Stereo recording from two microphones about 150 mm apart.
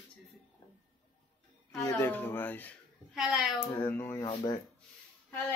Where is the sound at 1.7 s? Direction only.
20° left (ahead or behind).